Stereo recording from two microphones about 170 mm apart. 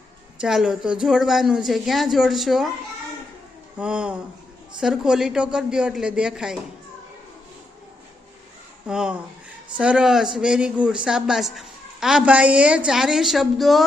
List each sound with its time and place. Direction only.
0.4 s speech: 5° right (ahead or behind)
3.8 s speech: 5° right (ahead or behind)
8.9 s speech: 5° right (ahead or behind)